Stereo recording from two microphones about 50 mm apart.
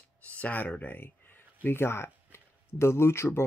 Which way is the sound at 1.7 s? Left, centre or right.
Left.